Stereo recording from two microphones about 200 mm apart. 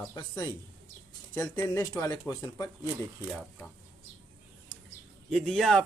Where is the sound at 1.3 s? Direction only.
10° left (ahead or behind).